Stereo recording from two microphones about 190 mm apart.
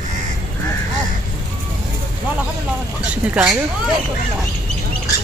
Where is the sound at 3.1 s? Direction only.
5° right (ahead or behind).